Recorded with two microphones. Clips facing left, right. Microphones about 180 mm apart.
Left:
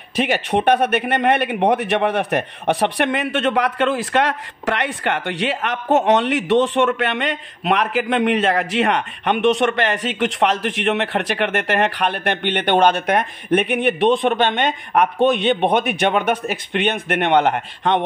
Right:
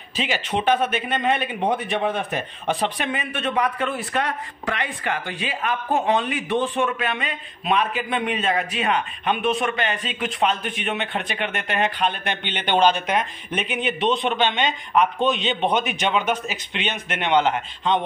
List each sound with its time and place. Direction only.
0.1 s a man's voice: 60° left (ahead or behind)